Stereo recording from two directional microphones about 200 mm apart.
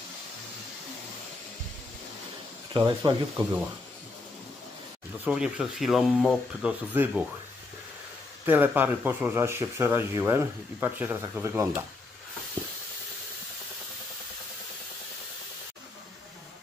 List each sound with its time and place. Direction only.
2.7 s speech: 20° right (ahead or behind)
5.2 s speech: 5° right (ahead or behind)
8.5 s speech: 10° right (ahead or behind)